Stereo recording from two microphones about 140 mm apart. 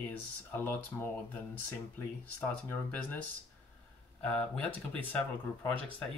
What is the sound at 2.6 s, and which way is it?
Speech, 10° left (ahead or behind).